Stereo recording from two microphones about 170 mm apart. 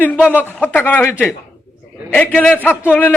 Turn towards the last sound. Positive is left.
turn(degrees=10)  # may be behind; listen again after turning